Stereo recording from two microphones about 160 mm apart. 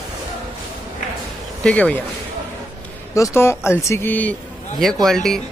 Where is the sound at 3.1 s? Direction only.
15° left (ahead or behind).